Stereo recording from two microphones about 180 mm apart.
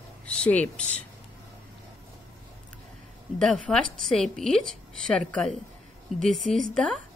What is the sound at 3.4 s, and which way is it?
A woman's voice, centre (ahead or behind).